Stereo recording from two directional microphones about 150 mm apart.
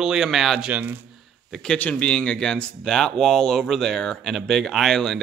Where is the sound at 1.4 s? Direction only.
Centre (ahead or behind).